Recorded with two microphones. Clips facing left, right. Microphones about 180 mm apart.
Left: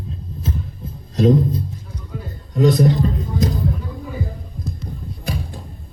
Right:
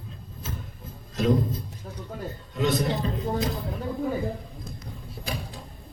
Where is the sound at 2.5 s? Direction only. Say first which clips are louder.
Left 9 dB; 40° left (ahead or behind).